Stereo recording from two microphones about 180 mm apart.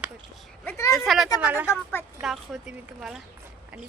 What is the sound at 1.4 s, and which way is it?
Speech, 10° right (ahead or behind).